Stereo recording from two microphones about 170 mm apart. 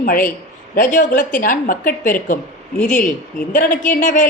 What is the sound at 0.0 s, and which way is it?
A man's voice, 55° left (ahead or behind).